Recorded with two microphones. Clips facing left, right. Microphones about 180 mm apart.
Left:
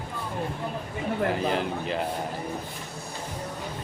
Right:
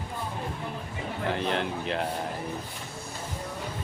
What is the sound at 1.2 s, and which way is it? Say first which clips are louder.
Speech: even; centre (ahead or behind).